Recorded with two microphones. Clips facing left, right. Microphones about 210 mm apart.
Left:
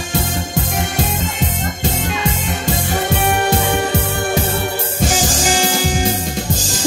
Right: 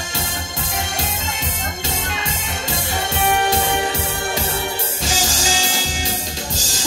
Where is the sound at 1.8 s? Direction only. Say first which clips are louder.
Left 8 dB; 55° left (ahead or behind).